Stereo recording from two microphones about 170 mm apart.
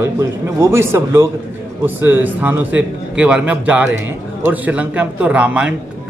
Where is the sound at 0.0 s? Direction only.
15° right (ahead or behind).